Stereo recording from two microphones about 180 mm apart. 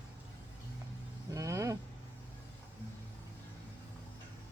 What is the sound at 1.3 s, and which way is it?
Vehicle, 15° right (ahead or behind).